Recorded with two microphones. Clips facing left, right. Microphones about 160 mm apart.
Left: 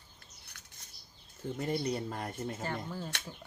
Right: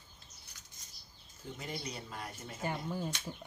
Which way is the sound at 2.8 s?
15° right (ahead or behind).